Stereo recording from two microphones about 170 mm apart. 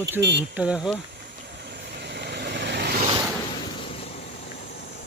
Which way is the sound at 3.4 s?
30° left (ahead or behind).